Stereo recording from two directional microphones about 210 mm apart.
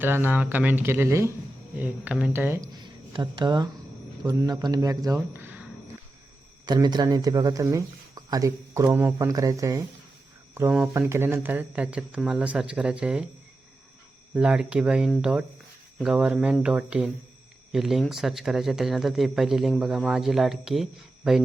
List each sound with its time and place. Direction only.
0.0 s speech: 10° right (ahead or behind)
5.1 s a sound: 10° right (ahead or behind)
6.7 s speech: 20° right (ahead or behind)
14.3 s speech: 5° right (ahead or behind)